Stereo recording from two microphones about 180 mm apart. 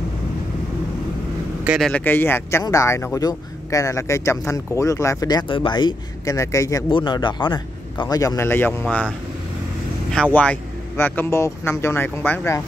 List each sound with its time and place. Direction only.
1.6 s speech: 5° right (ahead or behind)
1.9 s speech: 10° left (ahead or behind)
10.3 s speech: 10° left (ahead or behind)